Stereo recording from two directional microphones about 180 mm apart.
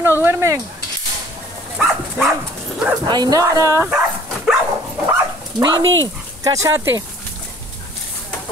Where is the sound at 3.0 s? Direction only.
25° right (ahead or behind).